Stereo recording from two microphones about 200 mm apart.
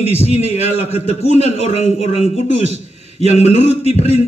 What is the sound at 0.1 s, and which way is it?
Speech, 30° left (ahead or behind).